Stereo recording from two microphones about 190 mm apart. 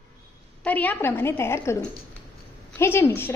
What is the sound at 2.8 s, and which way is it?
Speech, 15° left (ahead or behind).